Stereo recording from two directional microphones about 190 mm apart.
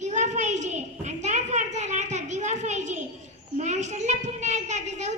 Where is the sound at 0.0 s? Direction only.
40° right (ahead or behind).